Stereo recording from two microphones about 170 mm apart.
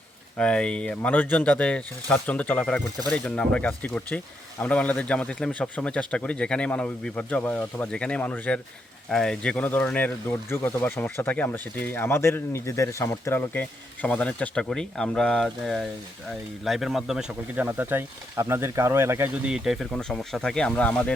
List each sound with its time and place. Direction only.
0.3 s speech: 5° left (ahead or behind)